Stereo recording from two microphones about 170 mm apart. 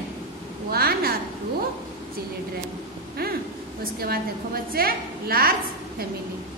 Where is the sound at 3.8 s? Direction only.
60° right (ahead or behind).